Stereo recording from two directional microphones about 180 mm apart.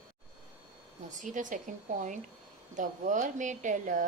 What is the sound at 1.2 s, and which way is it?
A woman's voice, 45° right (ahead or behind).